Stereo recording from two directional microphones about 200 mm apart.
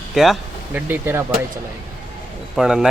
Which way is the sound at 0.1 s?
Centre (ahead or behind).